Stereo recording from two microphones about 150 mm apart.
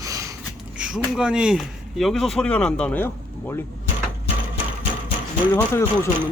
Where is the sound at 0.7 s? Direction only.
5° right (ahead or behind); by 3.6 s 15° left (ahead or behind).